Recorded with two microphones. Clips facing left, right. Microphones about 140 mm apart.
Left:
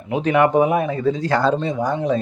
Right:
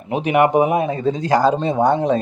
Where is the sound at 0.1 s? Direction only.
15° right (ahead or behind).